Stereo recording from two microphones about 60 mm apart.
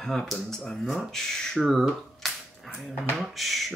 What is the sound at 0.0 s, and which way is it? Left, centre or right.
Speech, centre.